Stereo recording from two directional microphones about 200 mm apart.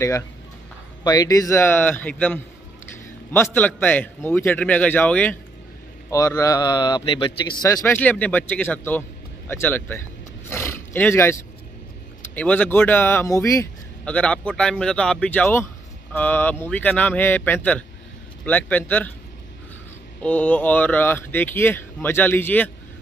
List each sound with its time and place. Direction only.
1.0 s speech: 20° left (ahead or behind)
9.5 s a sound: 10° left (ahead or behind)
12.2 s speech: 5° left (ahead or behind)
20.2 s speech: 5° left (ahead or behind)